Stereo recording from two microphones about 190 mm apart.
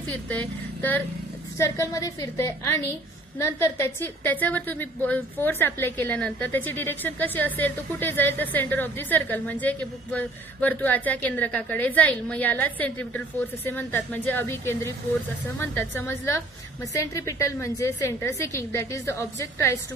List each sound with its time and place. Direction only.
0.3 s a woman's voice: 10° left (ahead or behind)